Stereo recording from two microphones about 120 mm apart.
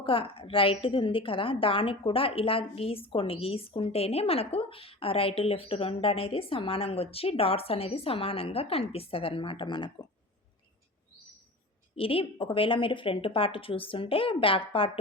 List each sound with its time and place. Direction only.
0.0 s a woman's voice: 50° left (ahead or behind)
11.9 s a woman's voice: 50° left (ahead or behind)